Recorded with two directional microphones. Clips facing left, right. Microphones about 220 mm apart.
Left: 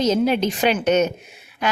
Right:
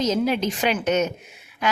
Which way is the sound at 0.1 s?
30° left (ahead or behind).